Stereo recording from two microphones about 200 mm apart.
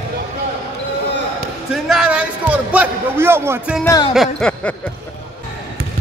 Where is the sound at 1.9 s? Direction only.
5° right (ahead or behind).